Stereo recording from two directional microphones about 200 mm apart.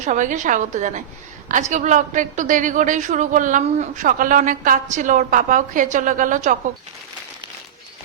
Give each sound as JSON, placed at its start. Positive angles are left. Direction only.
{"t": 0.0, "sound": "a woman's voice", "side_deg": -40}